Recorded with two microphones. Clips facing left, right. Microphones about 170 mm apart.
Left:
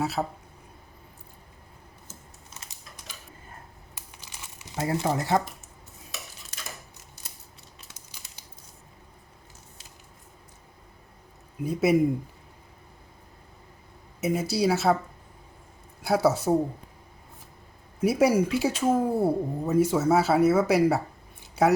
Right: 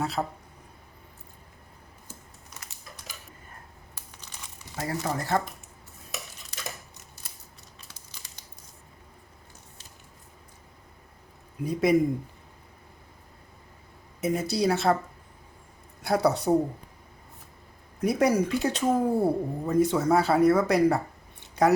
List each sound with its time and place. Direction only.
0.0 s speech: 5° left (ahead or behind)
4.8 s speech: 25° left (ahead or behind)
11.6 s speech: 5° left (ahead or behind)
14.2 s speech: 5° left (ahead or behind)
16.0 s speech: 5° left (ahead or behind)
18.0 s speech: 5° left (ahead or behind)